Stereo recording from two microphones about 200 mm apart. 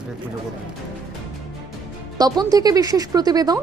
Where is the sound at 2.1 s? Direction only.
20° right (ahead or behind).